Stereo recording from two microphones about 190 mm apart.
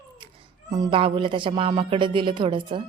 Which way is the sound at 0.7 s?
25° right (ahead or behind).